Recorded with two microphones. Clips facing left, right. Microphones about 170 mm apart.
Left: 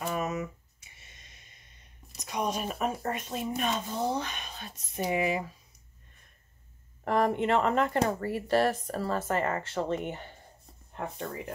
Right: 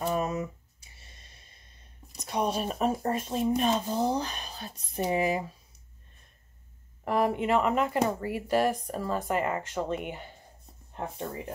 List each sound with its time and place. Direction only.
0.0 s a sound: 35° right (ahead or behind)
2.3 s speech: 30° right (ahead or behind)
7.1 s speech: 5° right (ahead or behind)